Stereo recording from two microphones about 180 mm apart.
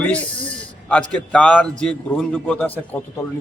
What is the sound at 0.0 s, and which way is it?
A man's voice, 5° left (ahead or behind).